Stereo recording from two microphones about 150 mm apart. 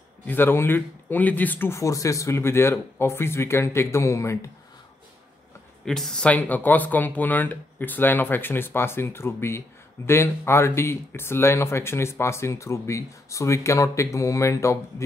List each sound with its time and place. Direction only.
0.3 s speech: 15° left (ahead or behind)
5.9 s speech: 5° left (ahead or behind); by 15.0 s 20° left (ahead or behind)